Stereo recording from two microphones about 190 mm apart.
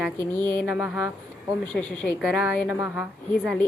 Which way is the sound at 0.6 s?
5° right (ahead or behind).